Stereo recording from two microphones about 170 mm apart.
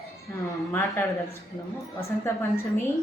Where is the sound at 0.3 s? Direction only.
15° left (ahead or behind).